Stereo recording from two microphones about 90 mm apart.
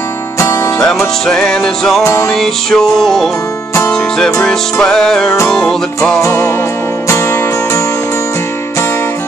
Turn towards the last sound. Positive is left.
turn(degrees=30)  # may be behind; listen again after turning